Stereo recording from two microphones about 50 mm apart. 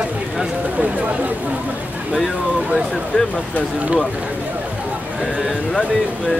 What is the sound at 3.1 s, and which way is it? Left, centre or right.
Speech, left.